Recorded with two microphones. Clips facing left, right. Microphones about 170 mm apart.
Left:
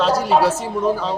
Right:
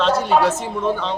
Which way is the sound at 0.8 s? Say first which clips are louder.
Left 2 dB; 5° left (ahead or behind).